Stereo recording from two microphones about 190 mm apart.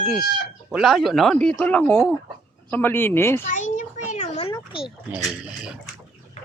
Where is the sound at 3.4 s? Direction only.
45° left (ahead or behind).